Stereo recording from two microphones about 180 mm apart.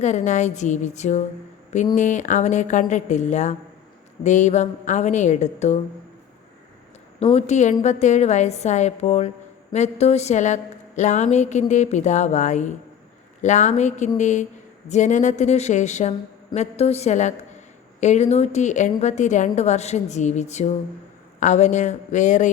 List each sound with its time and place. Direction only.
0.0 s a woman's voice: 40° left (ahead or behind)
7.2 s a woman's voice: 35° left (ahead or behind)